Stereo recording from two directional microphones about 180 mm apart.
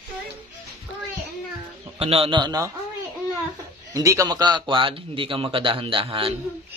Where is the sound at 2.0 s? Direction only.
30° right (ahead or behind).